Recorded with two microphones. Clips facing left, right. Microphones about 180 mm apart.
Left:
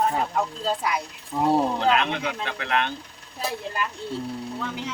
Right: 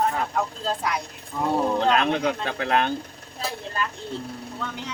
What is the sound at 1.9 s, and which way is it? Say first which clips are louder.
Speech: right 3 dB; 40° right (ahead or behind).